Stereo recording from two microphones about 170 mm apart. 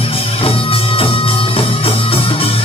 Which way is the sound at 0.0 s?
35° left (ahead or behind).